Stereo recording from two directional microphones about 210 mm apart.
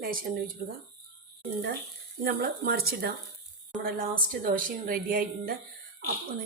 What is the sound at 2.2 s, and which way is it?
A woman's voice, 45° right (ahead or behind).